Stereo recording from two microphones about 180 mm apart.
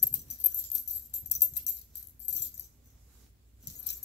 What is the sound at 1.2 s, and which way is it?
Music, 70° left (ahead or behind).